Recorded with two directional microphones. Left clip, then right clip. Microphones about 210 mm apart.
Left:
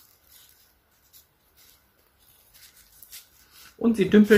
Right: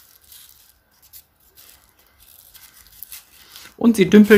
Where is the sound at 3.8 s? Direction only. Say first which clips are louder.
Right 6 dB; 50° right (ahead or behind).